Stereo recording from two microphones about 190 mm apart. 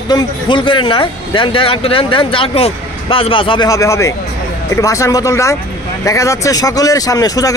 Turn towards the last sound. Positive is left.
turn(degrees=20)  # may be behind; listen again after turning